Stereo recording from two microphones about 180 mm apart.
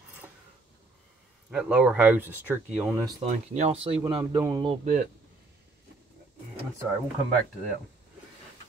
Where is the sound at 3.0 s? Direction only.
30° right (ahead or behind).